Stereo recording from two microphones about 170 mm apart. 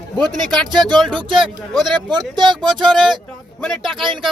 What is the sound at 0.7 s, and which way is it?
Speech, 25° right (ahead or behind).